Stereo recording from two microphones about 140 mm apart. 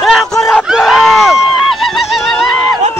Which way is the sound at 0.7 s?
Centre (ahead or behind).